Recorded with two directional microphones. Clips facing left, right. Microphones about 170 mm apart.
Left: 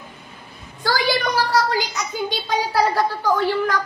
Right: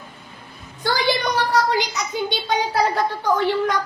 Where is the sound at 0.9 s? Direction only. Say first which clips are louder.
Even; 20° right (ahead or behind).